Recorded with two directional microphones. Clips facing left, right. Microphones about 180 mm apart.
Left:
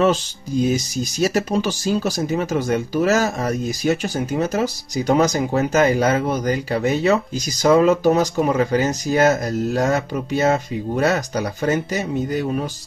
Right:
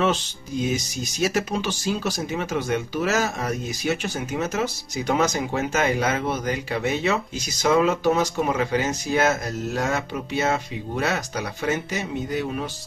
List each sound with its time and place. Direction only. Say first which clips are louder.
0.0 s speech: left 5 dB; 40° left (ahead or behind)